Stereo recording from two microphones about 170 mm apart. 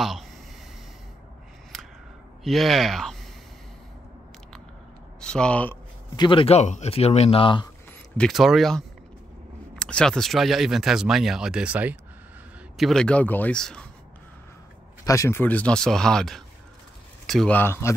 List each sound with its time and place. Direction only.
2.4 s speech: centre (ahead or behind)
5.2 s speech: 5° left (ahead or behind)
6.1 s speech: 30° left (ahead or behind)
8.2 s speech: centre (ahead or behind)
15.0 s speech: 15° left (ahead or behind)